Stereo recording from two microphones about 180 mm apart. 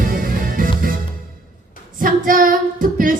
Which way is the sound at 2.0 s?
50° right (ahead or behind).